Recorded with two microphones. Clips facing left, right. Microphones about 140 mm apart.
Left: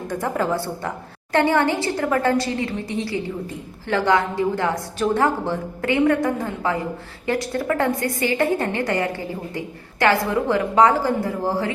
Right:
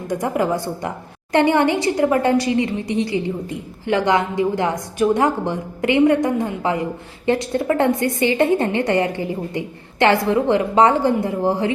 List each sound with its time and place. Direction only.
0.1 s a woman's voice: 15° right (ahead or behind)